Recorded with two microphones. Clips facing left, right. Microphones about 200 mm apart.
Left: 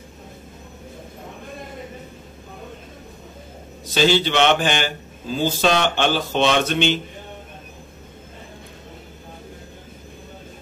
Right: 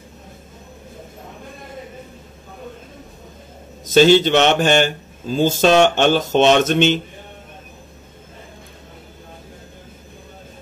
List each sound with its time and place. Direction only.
3.9 s speech: 45° right (ahead or behind)